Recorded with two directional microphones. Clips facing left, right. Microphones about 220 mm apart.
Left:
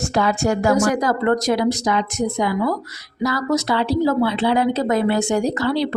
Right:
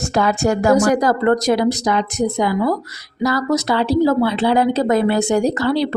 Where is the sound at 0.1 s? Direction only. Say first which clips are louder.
Right 3 dB; 45° right (ahead or behind).